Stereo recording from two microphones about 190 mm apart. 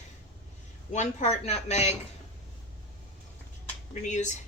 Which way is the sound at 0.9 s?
40° left (ahead or behind).